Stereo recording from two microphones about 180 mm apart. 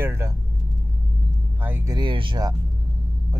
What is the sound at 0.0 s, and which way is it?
Speech, 15° right (ahead or behind).